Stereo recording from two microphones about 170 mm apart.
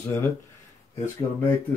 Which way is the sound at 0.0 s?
15° left (ahead or behind).